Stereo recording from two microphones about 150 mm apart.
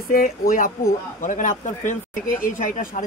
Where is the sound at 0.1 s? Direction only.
70° left (ahead or behind).